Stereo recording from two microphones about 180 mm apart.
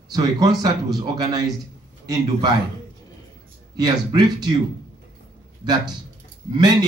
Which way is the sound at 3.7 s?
25° right (ahead or behind).